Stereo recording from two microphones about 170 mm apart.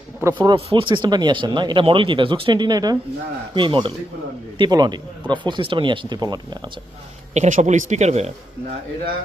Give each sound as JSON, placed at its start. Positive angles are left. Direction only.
{"t": 0.3, "sound": "speech", "side_deg": -30}
{"t": 7.3, "sound": "speech", "side_deg": -45}